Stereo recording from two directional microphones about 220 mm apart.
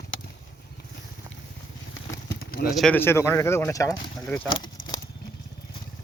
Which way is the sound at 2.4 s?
40° left (ahead or behind).